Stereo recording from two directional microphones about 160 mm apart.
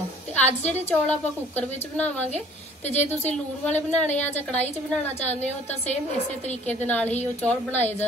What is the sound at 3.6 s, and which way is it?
Speech, 10° left (ahead or behind).